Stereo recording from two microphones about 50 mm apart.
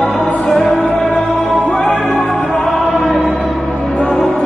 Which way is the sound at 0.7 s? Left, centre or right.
Left.